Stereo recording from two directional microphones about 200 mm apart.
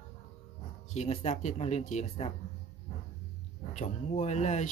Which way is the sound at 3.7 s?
35° left (ahead or behind).